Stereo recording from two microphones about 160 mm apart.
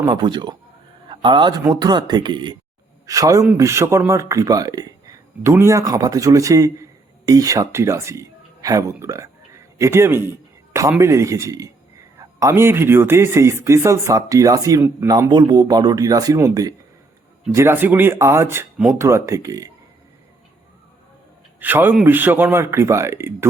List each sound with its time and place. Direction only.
0.1 s a man's voice: 30° right (ahead or behind)
21.6 s speech: 10° right (ahead or behind)